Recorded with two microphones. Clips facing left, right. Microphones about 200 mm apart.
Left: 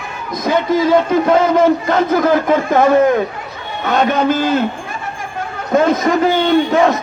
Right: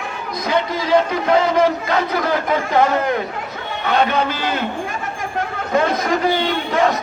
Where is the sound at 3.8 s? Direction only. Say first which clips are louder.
Left 4 dB; 45° left (ahead or behind).